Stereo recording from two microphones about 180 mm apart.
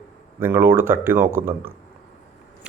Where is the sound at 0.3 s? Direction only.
10° right (ahead or behind).